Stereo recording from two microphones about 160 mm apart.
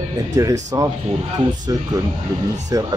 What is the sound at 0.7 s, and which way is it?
Speech, 20° right (ahead or behind).